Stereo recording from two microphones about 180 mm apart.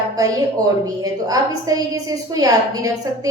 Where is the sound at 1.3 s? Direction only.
20° right (ahead or behind).